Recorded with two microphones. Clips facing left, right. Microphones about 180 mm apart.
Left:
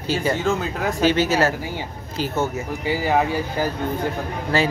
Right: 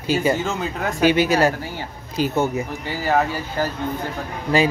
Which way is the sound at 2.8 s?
10° left (ahead or behind).